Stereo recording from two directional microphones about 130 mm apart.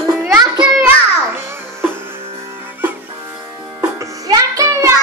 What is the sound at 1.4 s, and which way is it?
Music, 20° right (ahead or behind).